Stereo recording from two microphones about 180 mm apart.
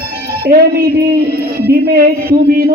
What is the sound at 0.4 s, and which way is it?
A man's voice, 55° right (ahead or behind).